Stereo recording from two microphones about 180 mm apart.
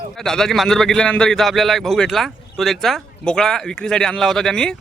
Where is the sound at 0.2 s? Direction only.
Centre (ahead or behind).